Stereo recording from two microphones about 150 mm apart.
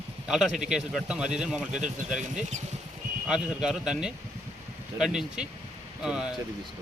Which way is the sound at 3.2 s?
5° right (ahead or behind).